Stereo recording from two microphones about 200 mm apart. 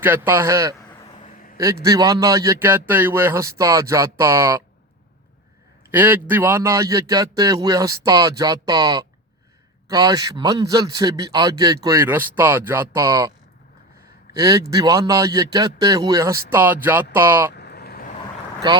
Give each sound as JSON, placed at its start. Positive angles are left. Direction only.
{"t": 0.0, "sound": "a man's voice", "side_deg": -10}
{"t": 0.8, "sound": "vehicle", "side_deg": 20}
{"t": 1.5, "sound": "a man's voice", "side_deg": -15}
{"t": 5.9, "sound": "a man's voice", "side_deg": -10}
{"t": 14.3, "sound": "a man's voice", "side_deg": -15}
{"t": 17.5, "sound": "vehicle", "side_deg": 55}